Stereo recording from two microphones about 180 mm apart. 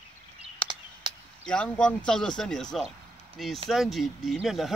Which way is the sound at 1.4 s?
5° left (ahead or behind).